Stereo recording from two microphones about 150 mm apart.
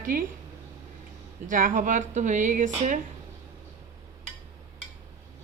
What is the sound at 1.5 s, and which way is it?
Dishes, 65° right (ahead or behind).